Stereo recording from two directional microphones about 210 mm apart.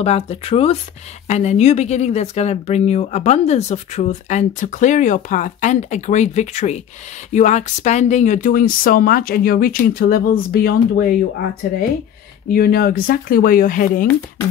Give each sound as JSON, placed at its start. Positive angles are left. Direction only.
{"t": 0.0, "sound": "speech", "side_deg": 30}
{"t": 12.5, "sound": "speech", "side_deg": 45}